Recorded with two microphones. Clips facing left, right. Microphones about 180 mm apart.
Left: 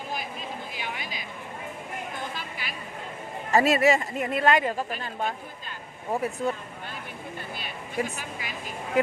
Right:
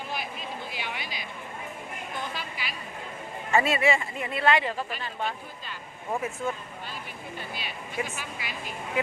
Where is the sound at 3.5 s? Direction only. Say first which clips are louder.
Left 3 dB; 40° left (ahead or behind).